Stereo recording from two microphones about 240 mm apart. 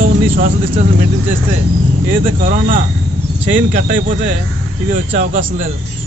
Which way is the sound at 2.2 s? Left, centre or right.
Right.